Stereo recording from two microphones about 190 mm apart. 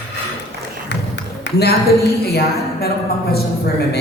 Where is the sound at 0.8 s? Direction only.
60° left (ahead or behind).